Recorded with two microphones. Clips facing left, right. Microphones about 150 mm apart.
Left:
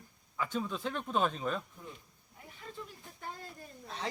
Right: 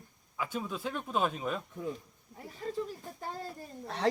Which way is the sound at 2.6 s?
40° right (ahead or behind).